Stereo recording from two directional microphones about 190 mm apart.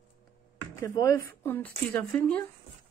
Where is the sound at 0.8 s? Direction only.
15° left (ahead or behind).